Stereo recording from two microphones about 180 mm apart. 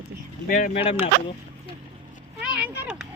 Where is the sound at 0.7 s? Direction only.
30° left (ahead or behind).